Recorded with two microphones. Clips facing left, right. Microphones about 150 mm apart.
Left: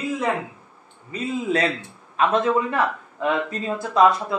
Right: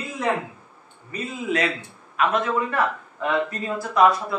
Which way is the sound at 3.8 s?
20° left (ahead or behind).